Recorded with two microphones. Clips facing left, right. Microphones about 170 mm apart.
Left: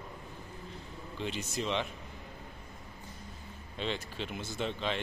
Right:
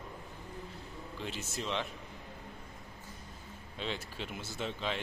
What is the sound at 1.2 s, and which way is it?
Speech, centre (ahead or behind).